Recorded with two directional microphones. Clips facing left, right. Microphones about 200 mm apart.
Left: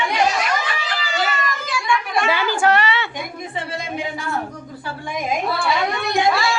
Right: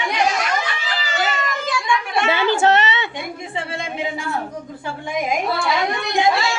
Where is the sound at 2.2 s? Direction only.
25° right (ahead or behind).